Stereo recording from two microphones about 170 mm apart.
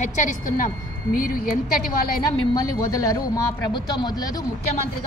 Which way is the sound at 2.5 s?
20° left (ahead or behind).